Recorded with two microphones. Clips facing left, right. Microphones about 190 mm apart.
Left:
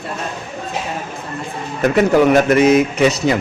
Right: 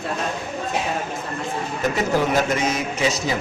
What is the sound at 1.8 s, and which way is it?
A man's voice, 65° left (ahead or behind).